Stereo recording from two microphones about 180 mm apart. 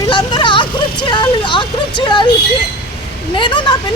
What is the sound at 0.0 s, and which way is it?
Vehicle, 25° left (ahead or behind).